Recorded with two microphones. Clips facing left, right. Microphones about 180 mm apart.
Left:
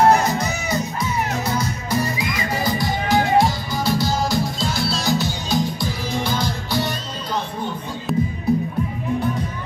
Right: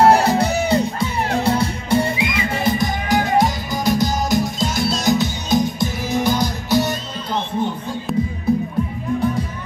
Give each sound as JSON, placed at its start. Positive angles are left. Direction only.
{"t": 0.0, "sound": "music", "side_deg": -30}
{"t": 8.1, "sound": "music", "side_deg": 0}